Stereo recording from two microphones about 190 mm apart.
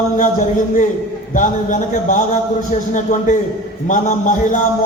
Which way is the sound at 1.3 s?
40° left (ahead or behind).